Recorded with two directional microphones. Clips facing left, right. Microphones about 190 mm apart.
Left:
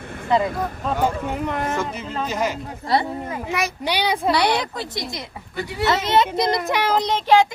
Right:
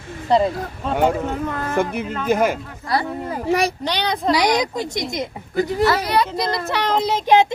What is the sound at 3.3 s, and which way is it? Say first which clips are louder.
Speech: right 6 dB; 35° right (ahead or behind).